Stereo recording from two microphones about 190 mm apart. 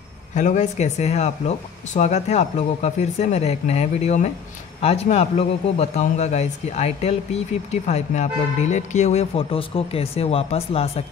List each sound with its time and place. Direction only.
0.3 s a man's voice: 40° left (ahead or behind)